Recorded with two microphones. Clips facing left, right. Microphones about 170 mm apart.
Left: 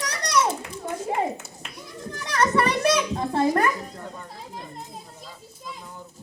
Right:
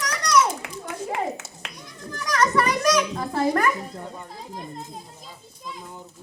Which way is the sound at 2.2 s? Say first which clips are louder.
Even; 30° left (ahead or behind).